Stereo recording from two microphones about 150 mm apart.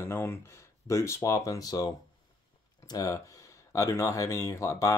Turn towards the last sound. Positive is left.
turn(degrees=20)  # may be behind; listen again after turning